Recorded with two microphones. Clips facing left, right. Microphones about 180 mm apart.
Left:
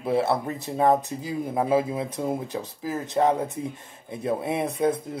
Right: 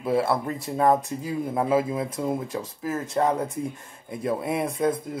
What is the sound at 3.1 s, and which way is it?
Speech, 20° left (ahead or behind).